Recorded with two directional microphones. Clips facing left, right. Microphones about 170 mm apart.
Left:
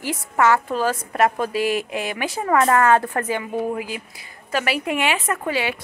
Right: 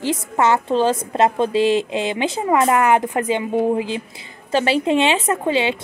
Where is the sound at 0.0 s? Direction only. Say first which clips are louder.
Right 1 dB; 20° right (ahead or behind).